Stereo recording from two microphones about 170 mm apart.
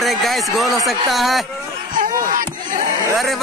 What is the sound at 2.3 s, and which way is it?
Crowd, 50° right (ahead or behind).